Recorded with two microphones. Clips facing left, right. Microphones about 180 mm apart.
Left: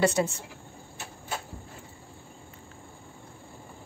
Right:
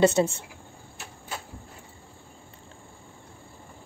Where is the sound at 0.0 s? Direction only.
25° right (ahead or behind).